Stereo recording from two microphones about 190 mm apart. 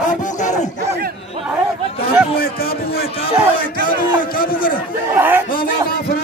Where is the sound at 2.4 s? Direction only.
50° left (ahead or behind).